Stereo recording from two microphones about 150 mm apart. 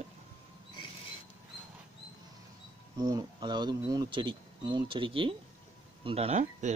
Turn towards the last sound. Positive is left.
turn(degrees=-45)  # may be behind; listen again after turning